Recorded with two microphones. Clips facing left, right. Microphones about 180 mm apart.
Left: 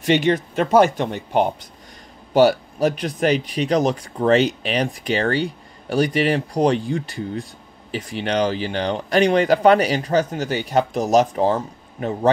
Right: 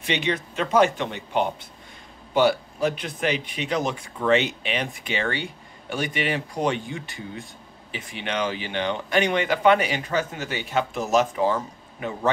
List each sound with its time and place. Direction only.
0.0 s speech: 45° left (ahead or behind)